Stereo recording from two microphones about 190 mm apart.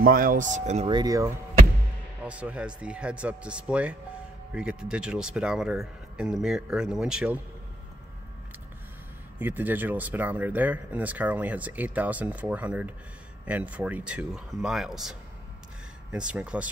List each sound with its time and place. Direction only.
0.0 s speech: 50° right (ahead or behind)
0.8 s speech: 20° right (ahead or behind)
2.2 s speech: 5° right (ahead or behind)
9.4 s speech: 10° right (ahead or behind)